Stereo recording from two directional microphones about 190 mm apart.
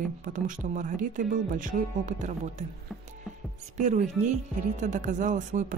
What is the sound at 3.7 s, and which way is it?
Speech, 40° right (ahead or behind).